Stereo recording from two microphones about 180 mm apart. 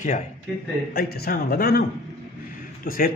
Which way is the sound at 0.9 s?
60° left (ahead or behind).